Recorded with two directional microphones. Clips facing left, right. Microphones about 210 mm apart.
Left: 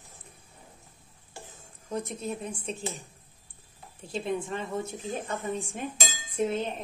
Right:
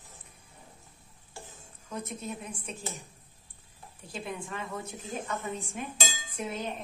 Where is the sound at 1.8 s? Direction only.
30° left (ahead or behind).